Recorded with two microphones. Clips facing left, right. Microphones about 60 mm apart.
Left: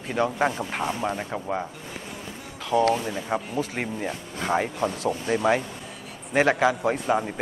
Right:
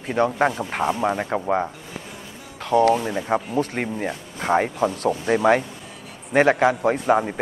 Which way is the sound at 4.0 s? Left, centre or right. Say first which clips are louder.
Right 2 dB; right.